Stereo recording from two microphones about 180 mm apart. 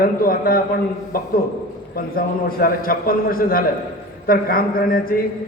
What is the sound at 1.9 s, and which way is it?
A man's voice, 55° left (ahead or behind).